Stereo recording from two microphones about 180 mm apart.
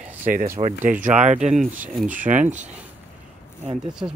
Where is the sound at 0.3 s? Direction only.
50° right (ahead or behind).